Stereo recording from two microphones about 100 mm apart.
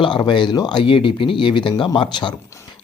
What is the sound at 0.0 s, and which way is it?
Speech, 50° left (ahead or behind).